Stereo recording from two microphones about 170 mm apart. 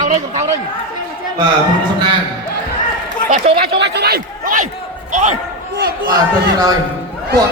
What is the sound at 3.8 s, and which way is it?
Speech, 80° right.